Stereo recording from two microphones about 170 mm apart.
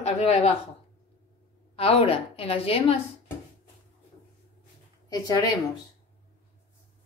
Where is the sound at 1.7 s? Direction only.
35° left (ahead or behind).